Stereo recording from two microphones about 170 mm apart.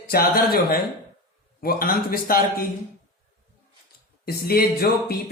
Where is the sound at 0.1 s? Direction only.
60° left (ahead or behind).